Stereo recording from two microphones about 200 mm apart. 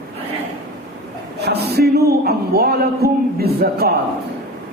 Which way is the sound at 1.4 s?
55° right (ahead or behind).